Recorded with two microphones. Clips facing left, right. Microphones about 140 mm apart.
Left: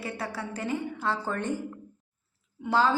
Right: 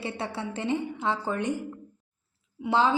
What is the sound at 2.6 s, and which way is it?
Speech, 20° right (ahead or behind).